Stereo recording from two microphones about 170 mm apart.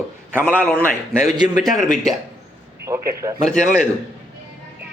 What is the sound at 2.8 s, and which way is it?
Speech, 15° right (ahead or behind).